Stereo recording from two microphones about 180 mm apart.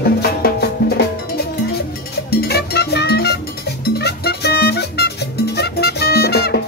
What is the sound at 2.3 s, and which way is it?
Music, 65° left (ahead or behind).